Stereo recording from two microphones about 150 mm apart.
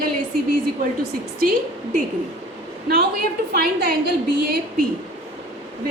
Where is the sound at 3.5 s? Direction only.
90° right.